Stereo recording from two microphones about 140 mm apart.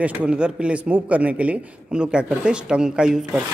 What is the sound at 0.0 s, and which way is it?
A man's voice, 10° right (ahead or behind).